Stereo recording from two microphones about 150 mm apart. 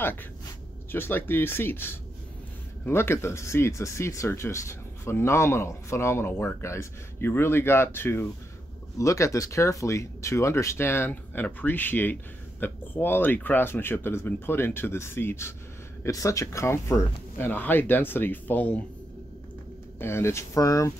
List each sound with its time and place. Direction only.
0.0 s speech: 15° left (ahead or behind)
20.0 s speech: 15° left (ahead or behind)